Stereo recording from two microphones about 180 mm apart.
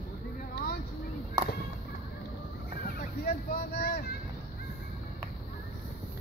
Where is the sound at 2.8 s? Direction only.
55° left (ahead or behind).